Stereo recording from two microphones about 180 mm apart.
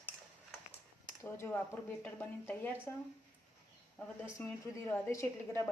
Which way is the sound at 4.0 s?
10° left (ahead or behind).